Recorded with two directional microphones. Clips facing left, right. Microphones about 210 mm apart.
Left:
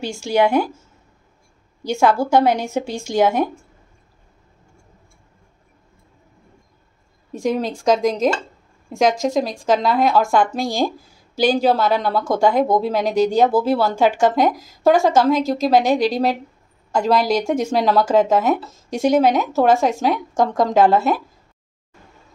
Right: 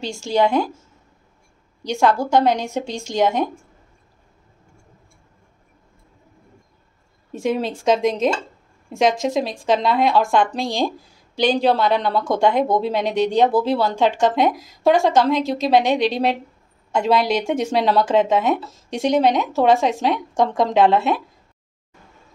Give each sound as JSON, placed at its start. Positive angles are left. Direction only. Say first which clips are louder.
{"t": 0.0, "sound": "speech", "louder": "left 1 dB", "side_deg": 10}
{"t": 1.8, "sound": "speech", "louder": "left 1 dB", "side_deg": 5}
{"t": 7.3, "sound": "speech", "louder": "left 1 dB", "side_deg": -5}